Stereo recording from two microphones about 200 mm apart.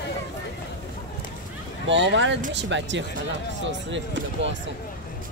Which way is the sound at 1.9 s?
65° right (ahead or behind).